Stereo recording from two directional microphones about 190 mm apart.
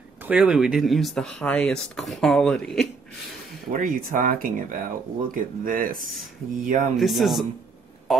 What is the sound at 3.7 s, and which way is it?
Speech, 45° right (ahead or behind).